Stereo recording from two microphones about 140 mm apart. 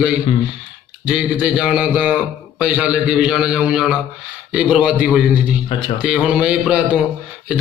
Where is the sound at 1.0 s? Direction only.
5° right (ahead or behind).